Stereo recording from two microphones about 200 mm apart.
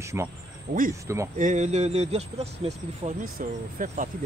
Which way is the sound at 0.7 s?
45° right (ahead or behind).